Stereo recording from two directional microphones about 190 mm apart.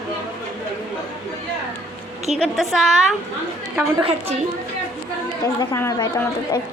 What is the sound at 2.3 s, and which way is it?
Speech, centre (ahead or behind).